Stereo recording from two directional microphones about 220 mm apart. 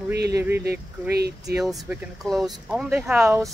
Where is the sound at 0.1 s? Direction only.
50° right (ahead or behind).